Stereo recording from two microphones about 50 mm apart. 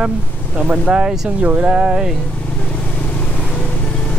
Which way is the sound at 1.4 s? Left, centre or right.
Right.